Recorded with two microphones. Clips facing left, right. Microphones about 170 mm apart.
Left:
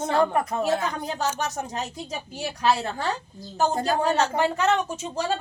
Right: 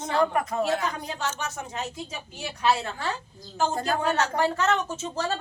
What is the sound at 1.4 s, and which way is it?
A woman's voice, 40° left (ahead or behind).